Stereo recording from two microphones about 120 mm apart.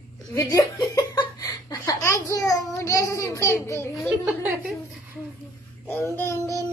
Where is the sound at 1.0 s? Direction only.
30° left (ahead or behind).